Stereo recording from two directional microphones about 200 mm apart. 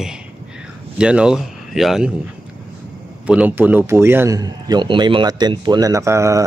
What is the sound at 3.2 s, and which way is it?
Speech, 5° right (ahead or behind).